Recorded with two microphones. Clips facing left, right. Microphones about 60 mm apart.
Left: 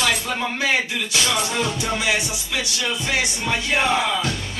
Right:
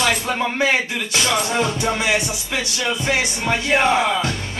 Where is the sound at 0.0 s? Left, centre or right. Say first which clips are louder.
Right 3 dB; right.